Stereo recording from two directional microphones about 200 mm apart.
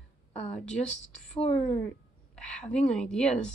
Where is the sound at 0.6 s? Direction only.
5° left (ahead or behind).